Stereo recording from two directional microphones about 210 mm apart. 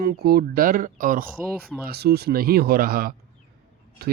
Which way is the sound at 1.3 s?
10° right (ahead or behind).